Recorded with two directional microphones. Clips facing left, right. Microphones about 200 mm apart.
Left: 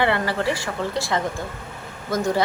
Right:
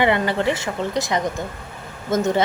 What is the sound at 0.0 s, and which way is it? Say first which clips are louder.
Speech: right 3 dB; 20° right (ahead or behind).